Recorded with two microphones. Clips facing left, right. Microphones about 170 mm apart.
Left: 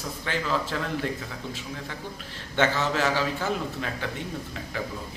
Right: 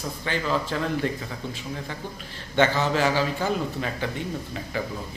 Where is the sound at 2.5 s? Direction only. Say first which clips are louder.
Right 3 dB; centre (ahead or behind).